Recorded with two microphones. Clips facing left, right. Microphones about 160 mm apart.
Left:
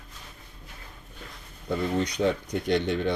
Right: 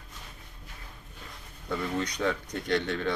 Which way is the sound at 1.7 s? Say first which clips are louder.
Left 4 dB; 25° left (ahead or behind).